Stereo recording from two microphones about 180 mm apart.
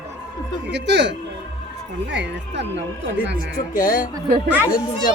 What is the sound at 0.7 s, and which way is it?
Speech, 75° right (ahead or behind).